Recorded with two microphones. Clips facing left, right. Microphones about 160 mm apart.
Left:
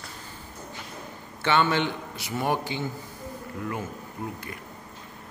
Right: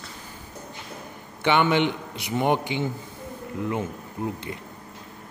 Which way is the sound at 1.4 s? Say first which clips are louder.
Right 3 dB; 15° right (ahead or behind).